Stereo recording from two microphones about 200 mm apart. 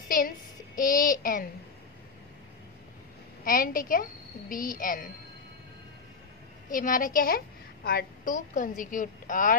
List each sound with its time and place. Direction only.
0.7 s a woman's voice: 45° left (ahead or behind)
3.4 s a woman's voice: 45° left (ahead or behind)
6.7 s a woman's voice: 40° left (ahead or behind)